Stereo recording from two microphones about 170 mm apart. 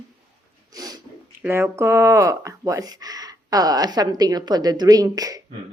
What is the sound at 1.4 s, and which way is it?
A woman's voice, 15° right (ahead or behind).